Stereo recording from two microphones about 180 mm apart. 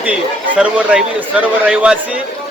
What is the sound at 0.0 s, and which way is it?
A man's voice, 5° right (ahead or behind).